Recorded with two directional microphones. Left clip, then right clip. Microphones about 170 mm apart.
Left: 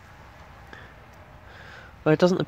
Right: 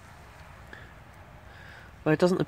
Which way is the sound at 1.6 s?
10° left (ahead or behind).